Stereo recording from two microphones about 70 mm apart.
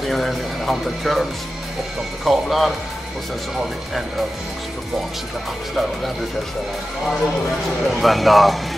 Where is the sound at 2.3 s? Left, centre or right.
Centre.